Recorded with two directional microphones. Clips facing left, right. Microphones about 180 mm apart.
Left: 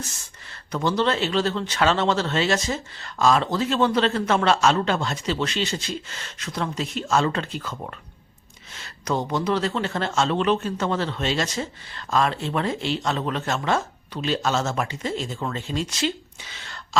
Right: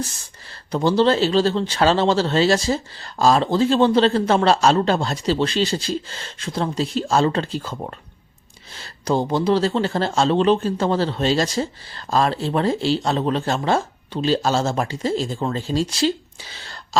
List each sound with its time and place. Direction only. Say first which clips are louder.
0.5 s speech: right 5 dB; 30° right (ahead or behind)